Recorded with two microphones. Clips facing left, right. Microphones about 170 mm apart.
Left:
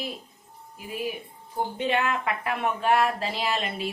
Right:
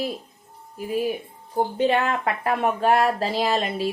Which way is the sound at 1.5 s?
35° right (ahead or behind).